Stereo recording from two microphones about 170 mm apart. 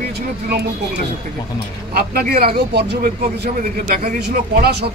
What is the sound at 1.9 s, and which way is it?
A man's voice, 65° right (ahead or behind).